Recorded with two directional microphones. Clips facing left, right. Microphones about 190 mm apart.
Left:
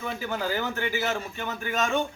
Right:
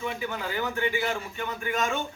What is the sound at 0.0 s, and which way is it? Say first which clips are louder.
A man's voice: left 1 dB; 40° left (ahead or behind).